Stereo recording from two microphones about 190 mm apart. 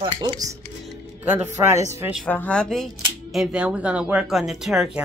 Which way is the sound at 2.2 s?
10° left (ahead or behind).